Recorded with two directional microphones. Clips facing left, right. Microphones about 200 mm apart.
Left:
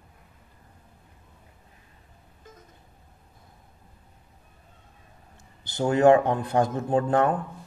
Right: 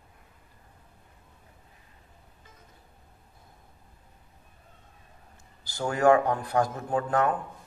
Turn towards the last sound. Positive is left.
turn(degrees=30)  # may be behind; listen again after turning